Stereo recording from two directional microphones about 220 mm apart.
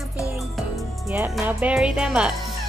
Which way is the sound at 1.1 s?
10° right (ahead or behind).